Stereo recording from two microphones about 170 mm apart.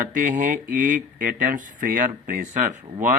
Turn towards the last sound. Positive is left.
turn(degrees=-45)  # may be behind; listen again after turning